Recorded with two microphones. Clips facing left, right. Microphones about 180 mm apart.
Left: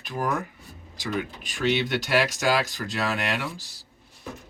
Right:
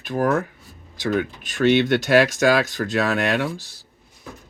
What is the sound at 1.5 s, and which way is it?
Speech, 50° right (ahead or behind).